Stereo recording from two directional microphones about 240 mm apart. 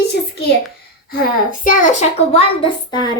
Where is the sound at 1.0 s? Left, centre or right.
Left.